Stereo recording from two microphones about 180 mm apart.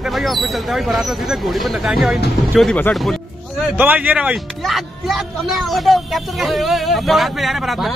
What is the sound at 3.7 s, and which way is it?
Speech, 10° right (ahead or behind).